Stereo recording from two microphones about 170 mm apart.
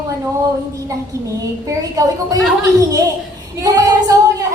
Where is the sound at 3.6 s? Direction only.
20° right (ahead or behind).